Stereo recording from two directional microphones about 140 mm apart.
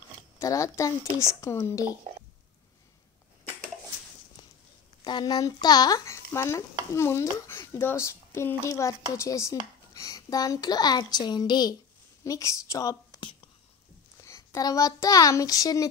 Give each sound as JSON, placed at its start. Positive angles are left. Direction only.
{"t": 0.4, "sound": "stir", "side_deg": 20}
{"t": 5.0, "sound": "stir", "side_deg": 30}
{"t": 12.3, "sound": "a woman's voice", "side_deg": 20}